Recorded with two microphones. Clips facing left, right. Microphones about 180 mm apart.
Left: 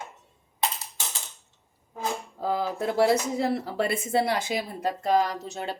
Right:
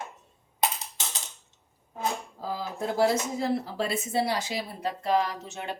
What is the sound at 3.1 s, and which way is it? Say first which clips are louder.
Speech: left 3 dB; 65° left (ahead or behind).